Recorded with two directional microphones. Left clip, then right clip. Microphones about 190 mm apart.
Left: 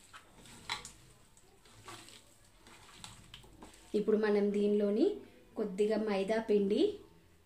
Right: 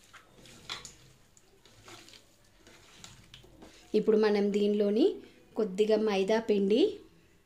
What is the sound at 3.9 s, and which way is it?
A woman's voice, 50° right (ahead or behind).